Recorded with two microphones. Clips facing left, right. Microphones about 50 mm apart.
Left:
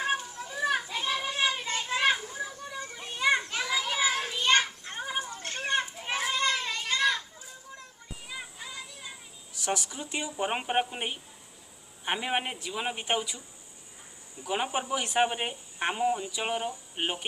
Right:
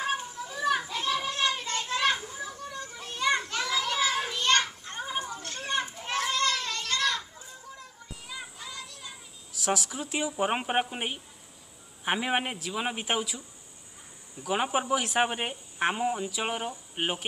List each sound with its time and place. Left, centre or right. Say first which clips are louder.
0.5 s children playing: right 1 dB; centre
5.4 s children playing: left 3 dB; left
5.9 s children playing: right 1 dB; centre
8.3 s a sound: even; centre
9.6 s a sound: right 2 dB; centre
10.1 s speech: right 3 dB; centre
14.5 s speech: right 3 dB; centre